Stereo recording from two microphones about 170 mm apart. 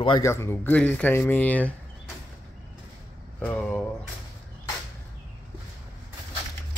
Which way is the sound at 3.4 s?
10° left (ahead or behind).